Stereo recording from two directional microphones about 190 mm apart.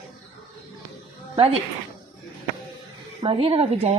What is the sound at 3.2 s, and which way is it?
Speech, 30° right (ahead or behind).